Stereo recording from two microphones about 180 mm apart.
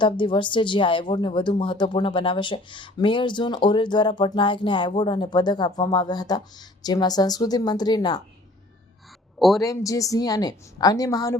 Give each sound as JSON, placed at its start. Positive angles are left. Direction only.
{"t": 0.0, "sound": "speech", "side_deg": 25}
{"t": 9.6, "sound": "speech", "side_deg": 20}